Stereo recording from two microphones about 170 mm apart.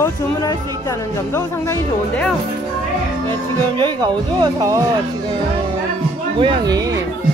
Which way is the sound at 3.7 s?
25° right (ahead or behind).